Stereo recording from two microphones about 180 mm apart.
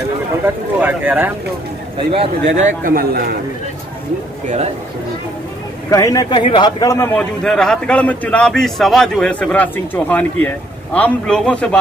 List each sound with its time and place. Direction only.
0.7 s speech: 10° right (ahead or behind)
2.5 s a man's voice: 45° right (ahead or behind)
5.9 s a man's voice: 20° left (ahead or behind)
6.3 s a man's voice: 30° left (ahead or behind)
7.2 s a man's voice: 5° left (ahead or behind)